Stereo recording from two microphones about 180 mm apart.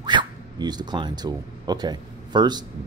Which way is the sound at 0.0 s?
25° right (ahead or behind).